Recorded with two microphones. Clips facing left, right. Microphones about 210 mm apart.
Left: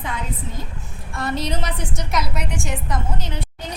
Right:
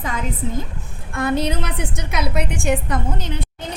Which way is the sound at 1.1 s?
55° right (ahead or behind).